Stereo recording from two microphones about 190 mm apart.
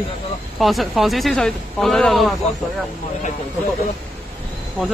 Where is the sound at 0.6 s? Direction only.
Centre (ahead or behind).